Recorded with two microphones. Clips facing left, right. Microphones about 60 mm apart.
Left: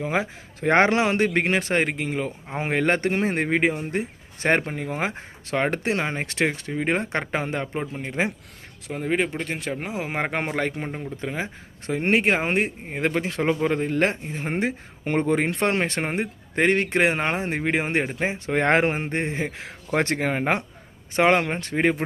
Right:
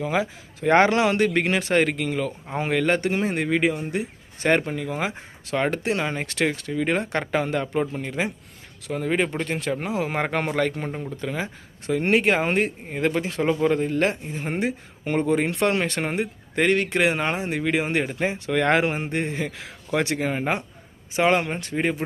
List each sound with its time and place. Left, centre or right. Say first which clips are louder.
0.0 s speech: right 1 dB; left
8.9 s speech: right 1 dB; centre
10.1 s speech: right 1 dB; left